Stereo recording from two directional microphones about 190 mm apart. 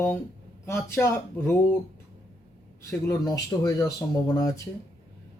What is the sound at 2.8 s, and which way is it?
Speech, 20° left (ahead or behind).